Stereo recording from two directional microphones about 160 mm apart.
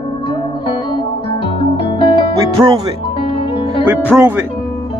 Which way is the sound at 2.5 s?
25° right (ahead or behind).